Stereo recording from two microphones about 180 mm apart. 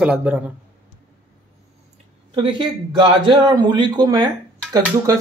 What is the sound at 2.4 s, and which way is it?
Speech, 30° right (ahead or behind).